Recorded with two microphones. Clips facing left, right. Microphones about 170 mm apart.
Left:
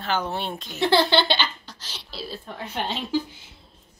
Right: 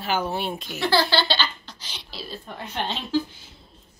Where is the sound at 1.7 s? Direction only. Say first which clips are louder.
Even; 5° left (ahead or behind).